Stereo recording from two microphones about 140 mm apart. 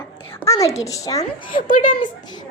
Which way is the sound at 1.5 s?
70° left (ahead or behind).